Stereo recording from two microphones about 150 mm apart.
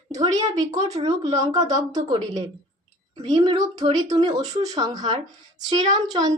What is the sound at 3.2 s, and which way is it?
Speech, 45° right (ahead or behind).